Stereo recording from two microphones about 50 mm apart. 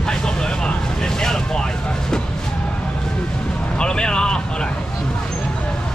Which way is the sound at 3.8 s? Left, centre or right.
Centre.